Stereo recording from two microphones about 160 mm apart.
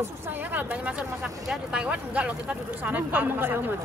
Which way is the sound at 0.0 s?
10° right (ahead or behind).